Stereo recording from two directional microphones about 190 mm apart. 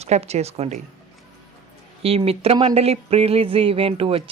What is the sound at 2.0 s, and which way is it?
Speech, 30° right (ahead or behind).